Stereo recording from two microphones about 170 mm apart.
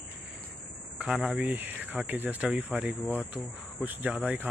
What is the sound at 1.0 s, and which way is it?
Speech, 5° right (ahead or behind).